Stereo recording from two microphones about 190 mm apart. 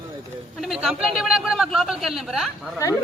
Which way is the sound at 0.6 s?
Centre (ahead or behind).